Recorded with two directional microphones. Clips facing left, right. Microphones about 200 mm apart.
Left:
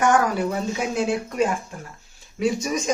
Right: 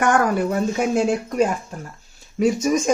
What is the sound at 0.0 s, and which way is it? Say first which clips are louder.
A woman's voice: right 1 dB; 55° right (ahead or behind).